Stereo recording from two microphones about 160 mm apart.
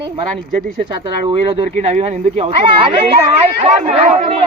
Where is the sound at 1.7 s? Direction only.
45° right (ahead or behind).